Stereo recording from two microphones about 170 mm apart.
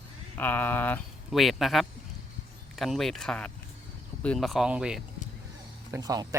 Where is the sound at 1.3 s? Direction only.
Centre (ahead or behind).